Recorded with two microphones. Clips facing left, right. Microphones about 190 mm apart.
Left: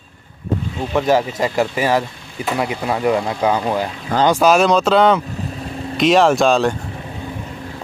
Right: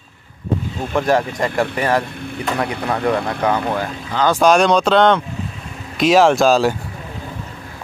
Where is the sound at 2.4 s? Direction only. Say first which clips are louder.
Left 1 dB; 10° left (ahead or behind).